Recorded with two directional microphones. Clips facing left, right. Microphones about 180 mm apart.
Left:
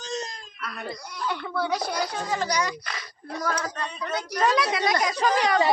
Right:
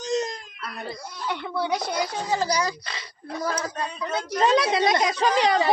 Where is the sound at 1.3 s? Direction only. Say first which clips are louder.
Right 1 dB; 20° right (ahead or behind).